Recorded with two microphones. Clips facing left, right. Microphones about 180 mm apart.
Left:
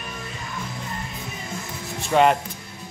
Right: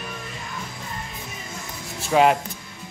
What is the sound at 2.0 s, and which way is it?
Speech, centre (ahead or behind).